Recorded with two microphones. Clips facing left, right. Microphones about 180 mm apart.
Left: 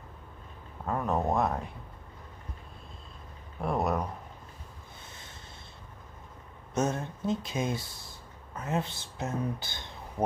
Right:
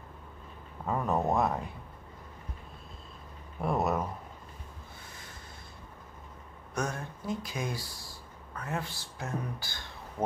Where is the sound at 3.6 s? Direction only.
Centre (ahead or behind).